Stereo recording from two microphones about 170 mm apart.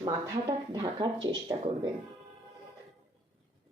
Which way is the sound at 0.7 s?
30° right (ahead or behind).